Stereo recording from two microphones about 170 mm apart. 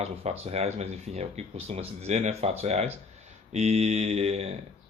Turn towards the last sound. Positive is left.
turn(degrees=-40)  # may be behind; listen again after turning